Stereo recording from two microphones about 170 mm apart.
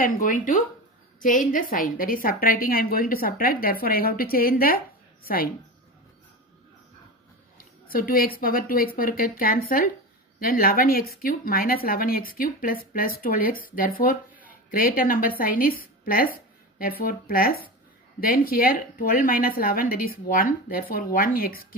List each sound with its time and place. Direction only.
0.0 s a woman's voice: 50° left (ahead or behind)
7.5 s a woman's voice: 55° left (ahead or behind)